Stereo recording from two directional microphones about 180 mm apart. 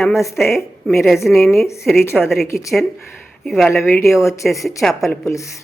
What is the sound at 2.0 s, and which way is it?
Speech, 15° left (ahead or behind).